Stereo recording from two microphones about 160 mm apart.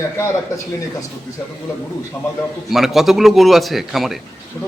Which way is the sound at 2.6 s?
Centre (ahead or behind).